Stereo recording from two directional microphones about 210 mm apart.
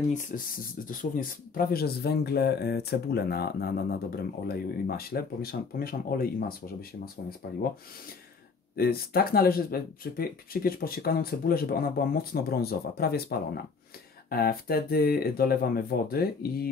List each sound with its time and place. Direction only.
0.3 s speech: 40° left (ahead or behind)
7.4 s speech: 50° left (ahead or behind)
8.7 s speech: 45° left (ahead or behind)